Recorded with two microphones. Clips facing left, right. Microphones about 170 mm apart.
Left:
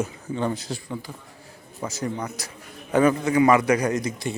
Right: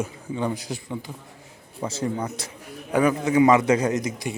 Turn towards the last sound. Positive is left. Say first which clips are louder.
# even
turn(degrees=-15)  # may be behind; listen again after turning